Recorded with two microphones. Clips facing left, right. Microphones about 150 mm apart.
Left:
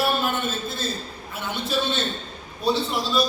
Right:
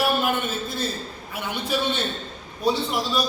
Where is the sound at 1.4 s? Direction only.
15° right (ahead or behind).